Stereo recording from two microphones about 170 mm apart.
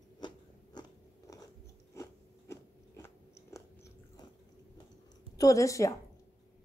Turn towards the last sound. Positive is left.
turn(degrees=20)  # may be behind; listen again after turning